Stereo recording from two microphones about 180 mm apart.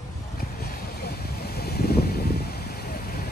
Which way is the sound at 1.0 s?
60° left (ahead or behind).